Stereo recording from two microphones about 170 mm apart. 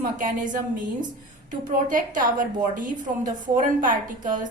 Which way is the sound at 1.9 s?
50° right (ahead or behind).